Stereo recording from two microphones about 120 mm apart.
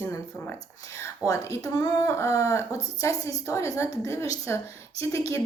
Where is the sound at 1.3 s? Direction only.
30° left (ahead or behind).